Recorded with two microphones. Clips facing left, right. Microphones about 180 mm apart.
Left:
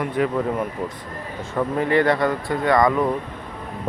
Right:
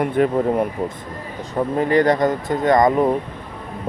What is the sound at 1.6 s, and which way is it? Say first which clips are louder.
Speech: right 2 dB; 25° right (ahead or behind).